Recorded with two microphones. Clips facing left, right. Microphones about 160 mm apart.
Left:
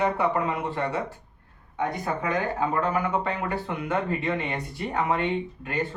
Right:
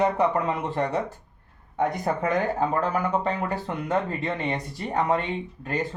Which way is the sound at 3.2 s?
35° right (ahead or behind).